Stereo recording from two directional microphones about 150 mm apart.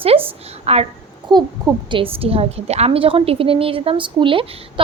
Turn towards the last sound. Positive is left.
turn(degrees=-35)  # may be behind; listen again after turning